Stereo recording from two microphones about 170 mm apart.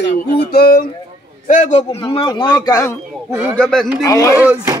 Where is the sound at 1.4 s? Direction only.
45° left (ahead or behind).